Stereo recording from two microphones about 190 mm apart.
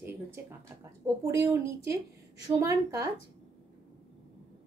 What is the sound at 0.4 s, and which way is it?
Speech, 10° right (ahead or behind).